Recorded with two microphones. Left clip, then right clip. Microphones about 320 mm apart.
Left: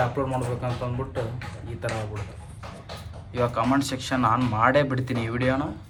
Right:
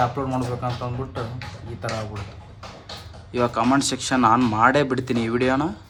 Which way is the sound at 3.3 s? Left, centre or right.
Centre.